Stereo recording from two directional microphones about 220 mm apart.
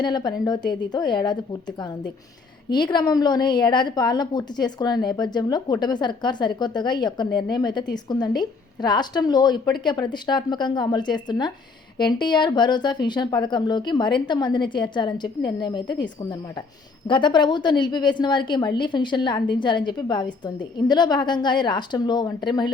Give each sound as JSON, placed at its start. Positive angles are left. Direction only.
{"t": 0.0, "sound": "a woman's voice", "side_deg": 20}